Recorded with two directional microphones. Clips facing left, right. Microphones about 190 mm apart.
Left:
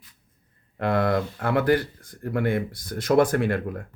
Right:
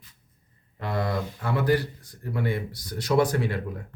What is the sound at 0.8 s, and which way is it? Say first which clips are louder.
Speech: left 6 dB; 60° left (ahead or behind).